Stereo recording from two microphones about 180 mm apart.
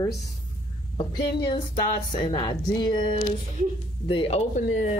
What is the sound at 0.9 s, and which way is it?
A woman's voice, 25° left (ahead or behind).